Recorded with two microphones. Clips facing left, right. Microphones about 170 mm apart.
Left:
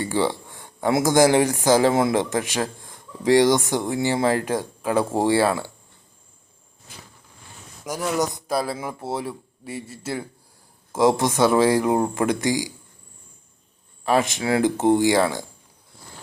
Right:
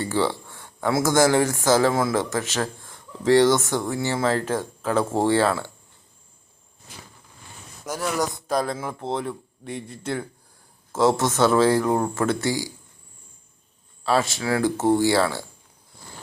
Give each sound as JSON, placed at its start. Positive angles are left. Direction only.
{"t": 0.0, "sound": "speech", "side_deg": 15}
{"t": 7.9, "sound": "speech", "side_deg": 15}
{"t": 14.0, "sound": "speech", "side_deg": 15}